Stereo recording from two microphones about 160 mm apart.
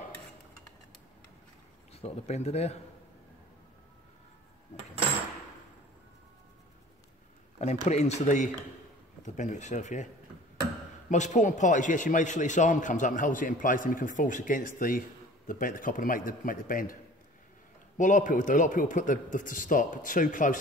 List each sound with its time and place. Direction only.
2.0 s speech: 40° left (ahead or behind)
7.6 s a sound: 40° left (ahead or behind)
7.9 s speech: 45° left (ahead or behind)
11.1 s a man's voice: 50° left (ahead or behind)